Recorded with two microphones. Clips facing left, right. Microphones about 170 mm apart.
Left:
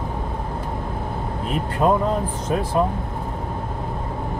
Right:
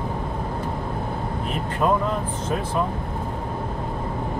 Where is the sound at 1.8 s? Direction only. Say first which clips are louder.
Left 3 dB; 30° left (ahead or behind).